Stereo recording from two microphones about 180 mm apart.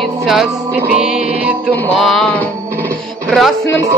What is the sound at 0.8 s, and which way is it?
Music, 10° right (ahead or behind).